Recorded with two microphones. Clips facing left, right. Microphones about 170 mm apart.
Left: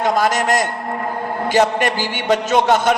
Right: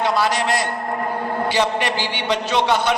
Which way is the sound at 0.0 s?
45° left (ahead or behind).